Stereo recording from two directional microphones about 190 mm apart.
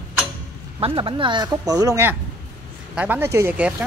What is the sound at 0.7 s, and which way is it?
Speech, 25° right (ahead or behind).